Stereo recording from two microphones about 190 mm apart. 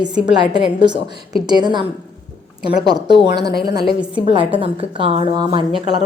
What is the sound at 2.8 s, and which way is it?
A woman's voice, 20° right (ahead or behind).